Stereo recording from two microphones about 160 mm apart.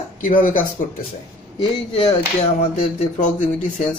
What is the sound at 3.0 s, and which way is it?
Speech, 50° left (ahead or behind).